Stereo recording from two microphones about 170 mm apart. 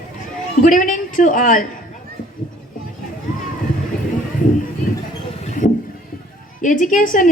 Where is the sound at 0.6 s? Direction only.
50° left (ahead or behind).